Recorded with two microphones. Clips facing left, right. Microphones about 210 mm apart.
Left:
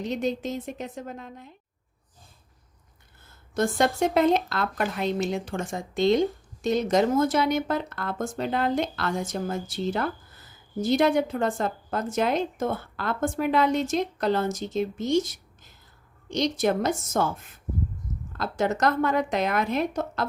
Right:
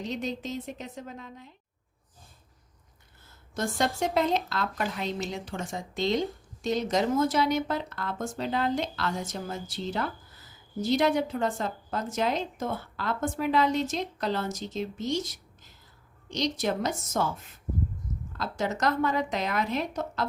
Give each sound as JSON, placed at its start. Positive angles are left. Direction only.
{"t": 0.1, "sound": "a woman's voice", "side_deg": 50}
{"t": 3.5, "sound": "a woman's voice", "side_deg": 55}
{"t": 16.3, "sound": "a woman's voice", "side_deg": 55}
{"t": 18.3, "sound": "speech", "side_deg": 55}